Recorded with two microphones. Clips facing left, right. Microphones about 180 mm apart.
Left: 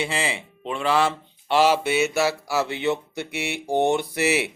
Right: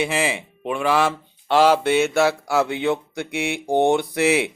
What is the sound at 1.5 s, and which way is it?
Speech, 45° right (ahead or behind).